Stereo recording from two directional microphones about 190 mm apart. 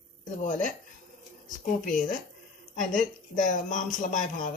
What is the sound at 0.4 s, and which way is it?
Speech, 45° left (ahead or behind).